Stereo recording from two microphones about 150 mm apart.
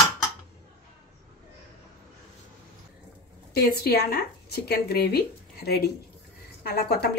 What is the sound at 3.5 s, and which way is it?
Speech, 90° left.